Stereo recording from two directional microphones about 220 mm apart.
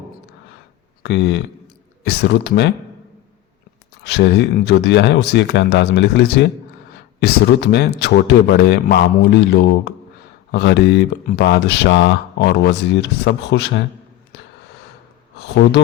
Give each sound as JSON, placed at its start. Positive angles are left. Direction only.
{"t": 1.0, "sound": "speech", "side_deg": 50}
{"t": 4.0, "sound": "speech", "side_deg": 50}
{"t": 15.4, "sound": "speech", "side_deg": 50}